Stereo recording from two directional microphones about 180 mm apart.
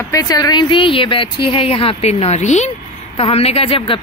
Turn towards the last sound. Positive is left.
turn(degrees=30)  # may be behind; listen again after turning